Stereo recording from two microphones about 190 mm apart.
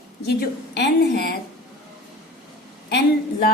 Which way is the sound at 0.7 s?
60° left (ahead or behind).